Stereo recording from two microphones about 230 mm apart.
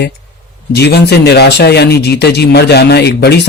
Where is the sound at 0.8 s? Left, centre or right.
Left.